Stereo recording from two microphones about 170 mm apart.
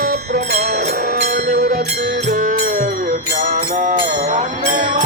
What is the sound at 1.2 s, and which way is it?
Music, 55° right (ahead or behind).